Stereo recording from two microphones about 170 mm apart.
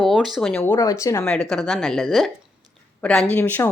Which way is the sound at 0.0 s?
Centre (ahead or behind).